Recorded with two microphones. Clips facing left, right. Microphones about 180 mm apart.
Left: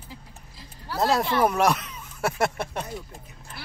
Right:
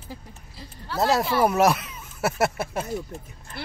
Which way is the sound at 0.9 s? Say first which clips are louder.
Right 1 dB; centre (ahead or behind).